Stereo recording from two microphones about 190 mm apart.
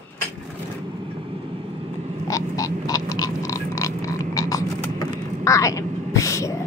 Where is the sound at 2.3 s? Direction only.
15° left (ahead or behind).